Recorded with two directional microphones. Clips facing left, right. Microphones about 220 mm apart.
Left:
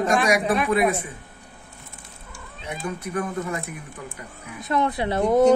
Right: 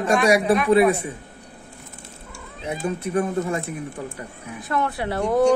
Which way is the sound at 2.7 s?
25° right (ahead or behind).